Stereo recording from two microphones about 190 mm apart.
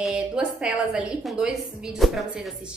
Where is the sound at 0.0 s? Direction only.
5° right (ahead or behind).